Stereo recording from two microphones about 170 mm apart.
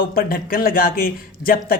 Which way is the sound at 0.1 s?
60° left (ahead or behind).